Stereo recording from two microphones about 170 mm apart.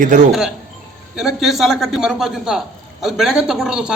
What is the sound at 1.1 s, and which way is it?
A man's voice, centre (ahead or behind).